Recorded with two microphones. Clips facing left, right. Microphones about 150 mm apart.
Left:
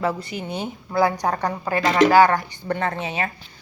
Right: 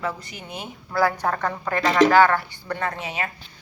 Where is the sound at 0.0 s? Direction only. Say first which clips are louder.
Left 6 dB; 30° left (ahead or behind).